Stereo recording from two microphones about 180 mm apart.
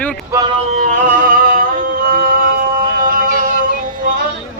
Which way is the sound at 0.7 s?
45° right (ahead or behind).